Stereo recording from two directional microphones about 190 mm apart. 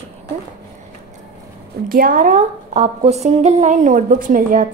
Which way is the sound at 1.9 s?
50° right (ahead or behind).